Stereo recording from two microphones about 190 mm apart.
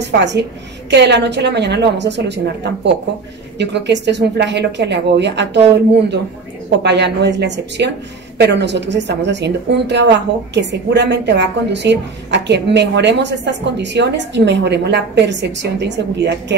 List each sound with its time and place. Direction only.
0.0 s a woman's voice: 65° right (ahead or behind)
6.8 s a woman's voice: 65° right (ahead or behind)